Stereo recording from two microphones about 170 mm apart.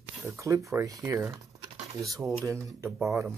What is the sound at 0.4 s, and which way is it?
Speech, 20° right (ahead or behind).